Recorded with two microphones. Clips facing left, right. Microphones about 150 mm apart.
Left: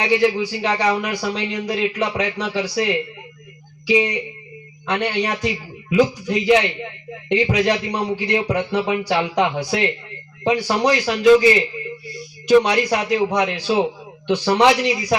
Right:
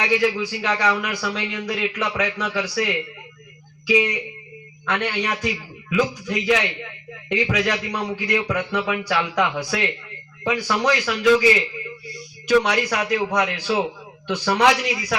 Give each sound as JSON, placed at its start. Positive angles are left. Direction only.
{"t": 0.0, "sound": "a man's voice", "side_deg": 30}
{"t": 12.5, "sound": "a man's voice", "side_deg": 25}